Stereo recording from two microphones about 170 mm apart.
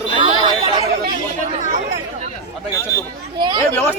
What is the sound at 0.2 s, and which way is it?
Chatter, 30° right (ahead or behind).